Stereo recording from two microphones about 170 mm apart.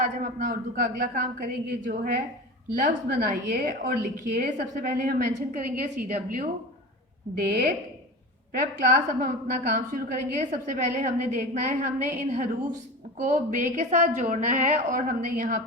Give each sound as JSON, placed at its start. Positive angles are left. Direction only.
{"t": 0.0, "sound": "a woman's voice", "side_deg": -50}